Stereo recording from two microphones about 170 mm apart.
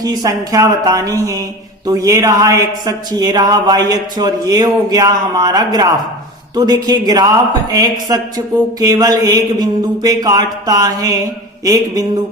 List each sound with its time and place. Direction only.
0.0 s speech: 20° right (ahead or behind)